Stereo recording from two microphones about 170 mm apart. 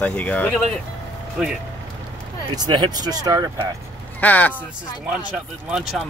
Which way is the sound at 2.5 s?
25° right (ahead or behind).